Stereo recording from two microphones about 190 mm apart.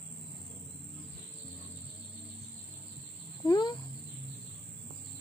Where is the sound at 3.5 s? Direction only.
20° left (ahead or behind).